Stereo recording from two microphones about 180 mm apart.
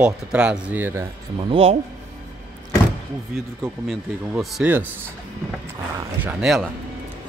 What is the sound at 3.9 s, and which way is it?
Speech, 5° right (ahead or behind).